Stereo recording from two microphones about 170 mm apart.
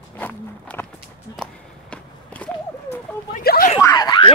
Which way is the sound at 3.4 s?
65° left (ahead or behind).